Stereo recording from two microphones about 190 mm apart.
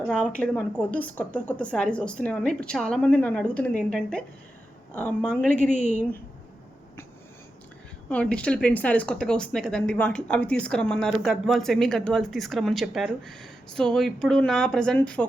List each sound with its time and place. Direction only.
0.1 s a woman's voice: 5° left (ahead or behind)
5.7 s a woman's voice: 35° left (ahead or behind)
8.1 s a woman's voice: 5° left (ahead or behind)